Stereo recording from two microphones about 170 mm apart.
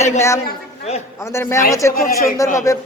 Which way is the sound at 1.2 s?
15° left (ahead or behind).